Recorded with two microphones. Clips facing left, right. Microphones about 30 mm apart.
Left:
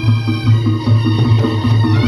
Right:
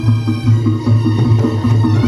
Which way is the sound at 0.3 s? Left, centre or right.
Left.